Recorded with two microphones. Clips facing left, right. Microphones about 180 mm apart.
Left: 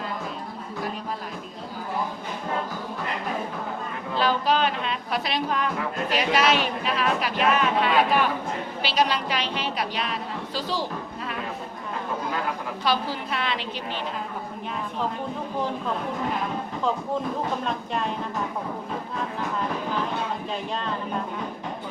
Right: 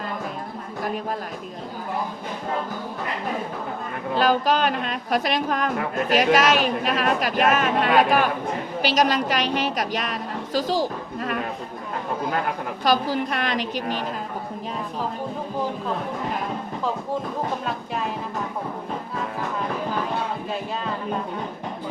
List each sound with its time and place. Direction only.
4.2 s a woman's voice: 45° right (ahead or behind)
12.8 s speech: 45° right (ahead or behind)